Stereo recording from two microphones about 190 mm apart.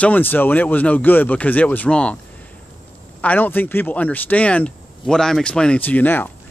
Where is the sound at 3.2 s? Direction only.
10° left (ahead or behind).